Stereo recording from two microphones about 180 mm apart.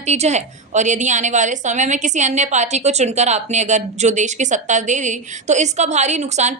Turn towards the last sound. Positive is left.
turn(degrees=-40)  # may be behind; listen again after turning